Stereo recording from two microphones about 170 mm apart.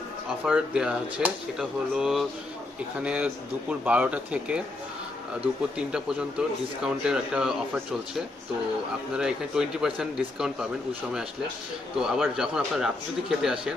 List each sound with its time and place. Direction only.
0.5 s a man's voice: 5° right (ahead or behind)
5.9 s a man's voice: 5° right (ahead or behind)
9.1 s a man's voice: 5° right (ahead or behind)
12.0 s a man's voice: 5° right (ahead or behind)